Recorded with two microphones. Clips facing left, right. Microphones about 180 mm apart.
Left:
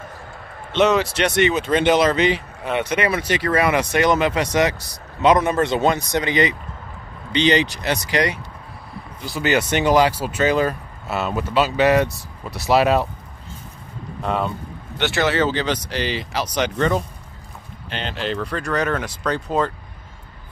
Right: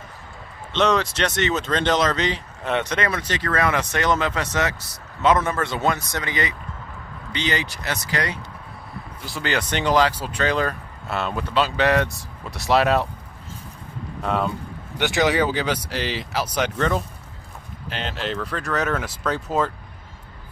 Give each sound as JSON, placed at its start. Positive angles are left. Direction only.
{"t": 0.7, "sound": "a man's voice", "side_deg": 10}
{"t": 9.2, "sound": "speech", "side_deg": 0}
{"t": 14.2, "sound": "speech", "side_deg": 0}
{"t": 15.0, "sound": "speech", "side_deg": -15}